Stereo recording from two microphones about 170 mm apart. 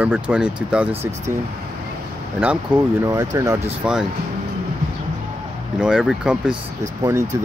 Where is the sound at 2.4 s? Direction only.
10° right (ahead or behind).